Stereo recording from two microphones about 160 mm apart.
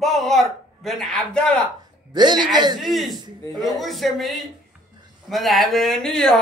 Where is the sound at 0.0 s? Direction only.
Centre (ahead or behind).